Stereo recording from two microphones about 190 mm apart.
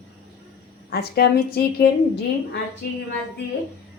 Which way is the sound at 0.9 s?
55° left (ahead or behind).